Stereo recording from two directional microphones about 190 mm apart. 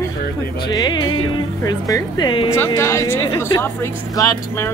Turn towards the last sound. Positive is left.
turn(degrees=15)  # may be behind; listen again after turning